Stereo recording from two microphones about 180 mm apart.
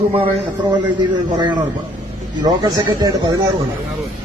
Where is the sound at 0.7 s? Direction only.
25° right (ahead or behind).